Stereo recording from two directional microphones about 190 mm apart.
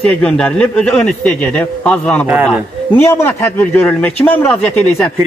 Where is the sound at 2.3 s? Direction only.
5° right (ahead or behind).